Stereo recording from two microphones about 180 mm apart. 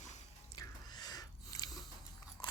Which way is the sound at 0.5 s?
20° left (ahead or behind).